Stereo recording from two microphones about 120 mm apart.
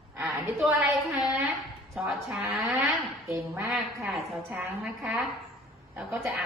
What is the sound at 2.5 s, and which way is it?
Speech, centre (ahead or behind).